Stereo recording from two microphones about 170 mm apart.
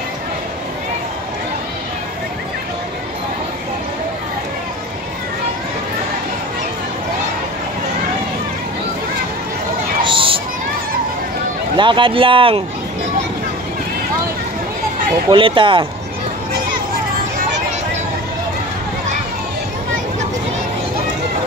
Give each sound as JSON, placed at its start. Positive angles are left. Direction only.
{"t": 10.0, "sound": "a sound", "side_deg": -30}
{"t": 11.7, "sound": "speech", "side_deg": -30}
{"t": 15.2, "sound": "speech", "side_deg": -30}